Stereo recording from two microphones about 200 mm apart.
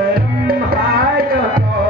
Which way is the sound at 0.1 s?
50° right (ahead or behind).